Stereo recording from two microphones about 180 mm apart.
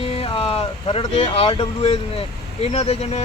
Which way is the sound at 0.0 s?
35° left (ahead or behind).